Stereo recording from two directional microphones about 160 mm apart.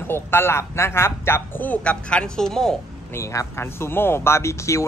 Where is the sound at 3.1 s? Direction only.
15° left (ahead or behind).